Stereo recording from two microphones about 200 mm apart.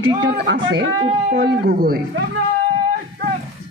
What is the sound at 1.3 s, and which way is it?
Speech, 50° right (ahead or behind).